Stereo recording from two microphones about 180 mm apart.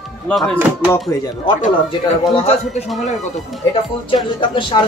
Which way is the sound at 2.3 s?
35° left (ahead or behind).